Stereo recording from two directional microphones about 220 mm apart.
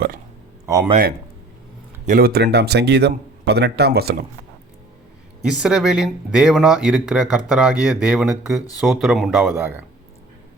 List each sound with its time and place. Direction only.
0.6 s speech: 15° right (ahead or behind)
2.0 s a man's voice: 40° right (ahead or behind)
5.4 s speech: 5° right (ahead or behind)